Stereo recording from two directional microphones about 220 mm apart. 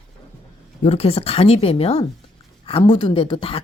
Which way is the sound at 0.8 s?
25° left (ahead or behind).